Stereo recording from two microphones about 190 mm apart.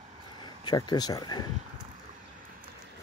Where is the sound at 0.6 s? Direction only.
20° left (ahead or behind).